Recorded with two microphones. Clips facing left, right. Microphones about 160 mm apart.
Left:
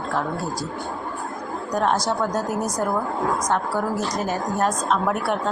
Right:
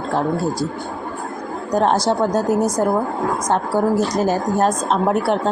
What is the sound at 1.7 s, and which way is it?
Speech, 30° right (ahead or behind).